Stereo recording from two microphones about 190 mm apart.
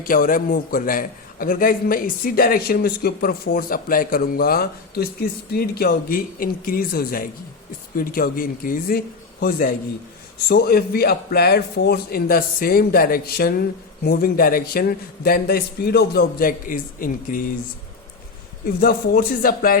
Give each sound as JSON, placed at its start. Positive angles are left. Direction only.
{"t": 0.0, "sound": "a man's voice", "side_deg": 45}
{"t": 18.6, "sound": "a man's voice", "side_deg": 55}